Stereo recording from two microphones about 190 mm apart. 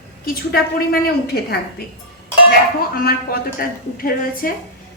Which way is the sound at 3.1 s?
50° left (ahead or behind).